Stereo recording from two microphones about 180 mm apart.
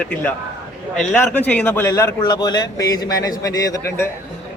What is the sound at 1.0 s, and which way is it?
A man's voice, 5° left (ahead or behind).